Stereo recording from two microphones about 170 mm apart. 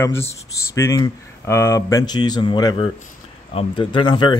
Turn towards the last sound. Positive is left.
turn(degrees=25)  # may be behind; listen again after turning